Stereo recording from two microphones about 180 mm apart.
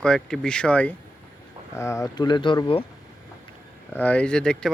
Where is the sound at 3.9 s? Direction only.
10° left (ahead or behind).